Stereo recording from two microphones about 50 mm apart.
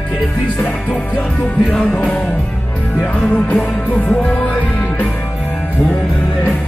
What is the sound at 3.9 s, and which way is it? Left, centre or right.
Music, left.